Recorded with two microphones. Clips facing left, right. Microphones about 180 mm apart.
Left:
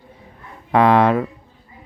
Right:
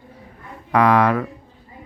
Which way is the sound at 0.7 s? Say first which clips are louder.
Left 2 dB; 25° left (ahead or behind).